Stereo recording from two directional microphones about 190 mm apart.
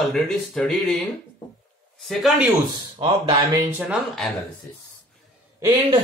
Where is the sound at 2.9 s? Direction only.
30° right (ahead or behind).